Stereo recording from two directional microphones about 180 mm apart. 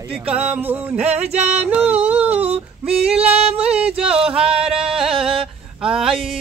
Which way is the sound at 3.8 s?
35° right (ahead or behind).